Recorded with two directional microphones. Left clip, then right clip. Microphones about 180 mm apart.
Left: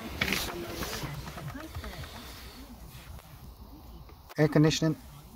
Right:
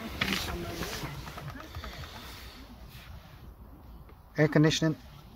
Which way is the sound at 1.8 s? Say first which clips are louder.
Even; centre (ahead or behind).